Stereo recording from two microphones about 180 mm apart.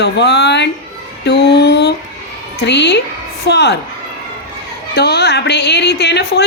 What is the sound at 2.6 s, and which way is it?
A woman's voice, 75° left (ahead or behind).